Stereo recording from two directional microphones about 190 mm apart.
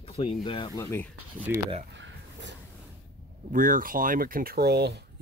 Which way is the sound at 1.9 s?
70° right (ahead or behind).